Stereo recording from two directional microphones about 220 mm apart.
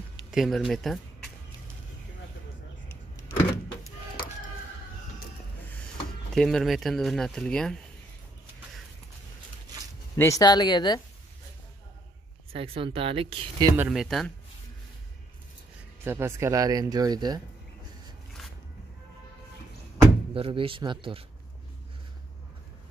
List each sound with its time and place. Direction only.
0.3 s speech: centre (ahead or behind)
6.3 s speech: centre (ahead or behind)
10.1 s speech: 15° left (ahead or behind)
12.5 s speech: 25° right (ahead or behind)
13.7 s speech: centre (ahead or behind)
16.0 s speech: 10° right (ahead or behind)
20.0 s speech: 25° right (ahead or behind)